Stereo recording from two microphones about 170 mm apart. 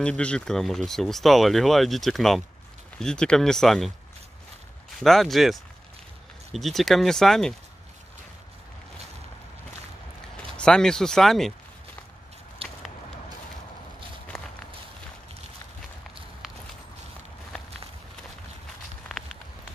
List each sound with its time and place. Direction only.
0.0 s speech: 5° left (ahead or behind)
4.9 s speech: centre (ahead or behind)
10.3 s speech: 5° left (ahead or behind)
14.3 s walk: centre (ahead or behind)